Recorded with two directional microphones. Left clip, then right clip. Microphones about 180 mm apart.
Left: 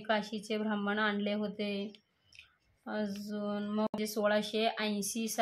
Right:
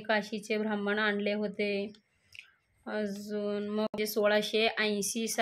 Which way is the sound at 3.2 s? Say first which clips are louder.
Right 4 dB; 40° right (ahead or behind).